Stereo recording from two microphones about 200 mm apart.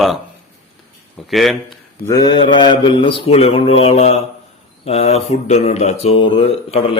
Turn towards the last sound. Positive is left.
turn(degrees=30)  # may be behind; listen again after turning